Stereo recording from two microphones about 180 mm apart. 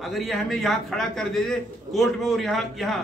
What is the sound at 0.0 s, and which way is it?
A man's voice, centre (ahead or behind).